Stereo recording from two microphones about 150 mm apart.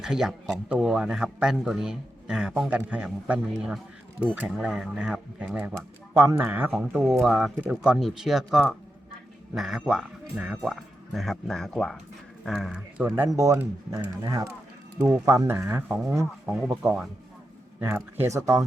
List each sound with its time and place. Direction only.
0.0 s a man's voice: 5° right (ahead or behind)
13.1 s speech: 20° right (ahead or behind)
15.0 s speech: 20° right (ahead or behind)